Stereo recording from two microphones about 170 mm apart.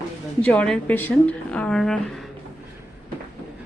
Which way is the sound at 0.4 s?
5° left (ahead or behind).